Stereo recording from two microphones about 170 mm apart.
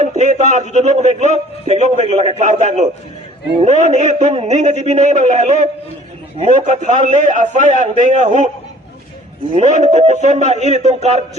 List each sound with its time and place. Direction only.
0.0 s a man's voice: 45° right (ahead or behind)
6.7 s a man's voice: 45° right (ahead or behind)
9.6 s a man's voice: 45° right (ahead or behind)